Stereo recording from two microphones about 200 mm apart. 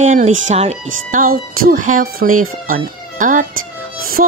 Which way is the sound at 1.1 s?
45° right (ahead or behind).